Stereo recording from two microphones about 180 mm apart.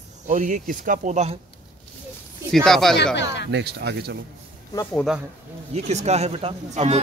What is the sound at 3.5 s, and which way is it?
Speech, 70° right (ahead or behind).